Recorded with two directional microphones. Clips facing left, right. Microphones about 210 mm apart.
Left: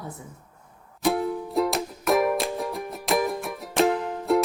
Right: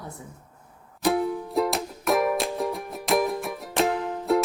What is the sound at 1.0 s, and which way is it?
Music, centre (ahead or behind).